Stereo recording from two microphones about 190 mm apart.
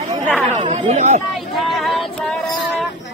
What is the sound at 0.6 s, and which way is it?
Chatter, 40° right (ahead or behind).